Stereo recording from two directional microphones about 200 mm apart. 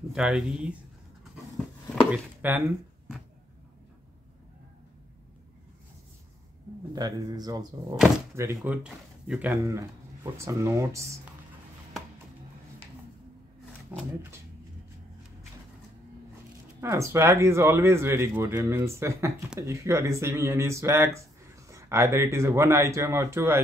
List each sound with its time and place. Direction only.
0.1 s speech: 5° right (ahead or behind)
2.0 s speech: 10° right (ahead or behind)
7.0 s speech: 20° right (ahead or behind)
8.5 s speech: 5° right (ahead or behind)
13.9 s speech: 10° right (ahead or behind)
16.8 s speech: 15° right (ahead or behind)